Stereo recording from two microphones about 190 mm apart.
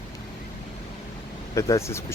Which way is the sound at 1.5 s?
15° left (ahead or behind).